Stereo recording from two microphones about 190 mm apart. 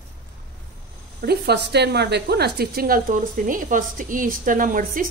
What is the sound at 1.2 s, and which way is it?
A woman's voice, 60° right (ahead or behind).